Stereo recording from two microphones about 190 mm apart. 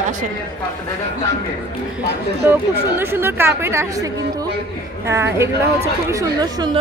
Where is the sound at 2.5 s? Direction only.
10° right (ahead or behind).